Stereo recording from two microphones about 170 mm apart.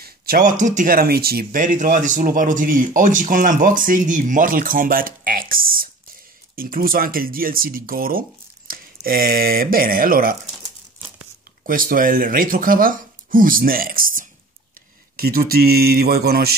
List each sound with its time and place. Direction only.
0.0 s speech: 55° right (ahead or behind)
11.6 s speech: 55° right (ahead or behind)